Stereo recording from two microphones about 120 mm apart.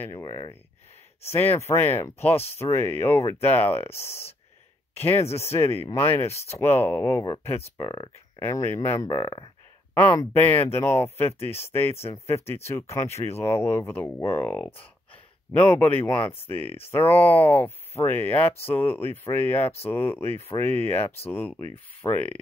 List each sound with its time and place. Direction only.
0.1 s speech: 30° left (ahead or behind)
1.2 s speech: 20° left (ahead or behind)
7.8 s speech: 40° left (ahead or behind)
8.4 s speech: 25° left (ahead or behind)
10.1 s speech: 20° left (ahead or behind)